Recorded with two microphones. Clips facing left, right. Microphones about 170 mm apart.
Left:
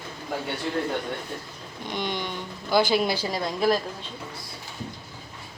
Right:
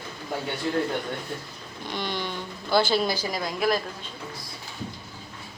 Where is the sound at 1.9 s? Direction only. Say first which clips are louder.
Left 1 dB; 15° left (ahead or behind).